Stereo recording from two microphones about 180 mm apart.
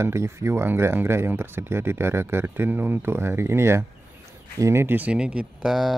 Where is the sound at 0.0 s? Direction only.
15° right (ahead or behind).